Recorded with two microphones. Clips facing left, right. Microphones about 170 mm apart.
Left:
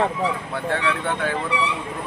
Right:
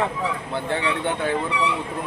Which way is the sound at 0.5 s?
25° right (ahead or behind).